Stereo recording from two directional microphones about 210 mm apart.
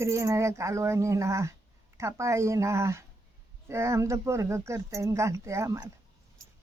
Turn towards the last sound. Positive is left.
turn(degrees=-15)  # may be behind; listen again after turning